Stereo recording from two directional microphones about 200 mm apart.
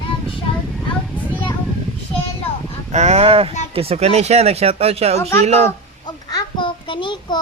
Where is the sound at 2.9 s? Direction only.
35° right (ahead or behind).